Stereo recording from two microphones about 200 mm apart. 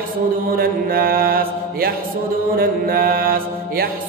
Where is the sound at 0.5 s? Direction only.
50° right (ahead or behind).